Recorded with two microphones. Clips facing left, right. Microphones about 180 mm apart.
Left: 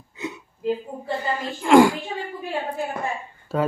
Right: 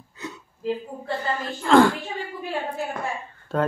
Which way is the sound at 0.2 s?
15° left (ahead or behind).